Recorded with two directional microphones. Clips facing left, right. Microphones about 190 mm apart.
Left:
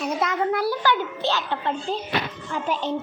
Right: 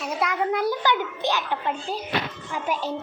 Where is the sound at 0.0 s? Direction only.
10° right (ahead or behind).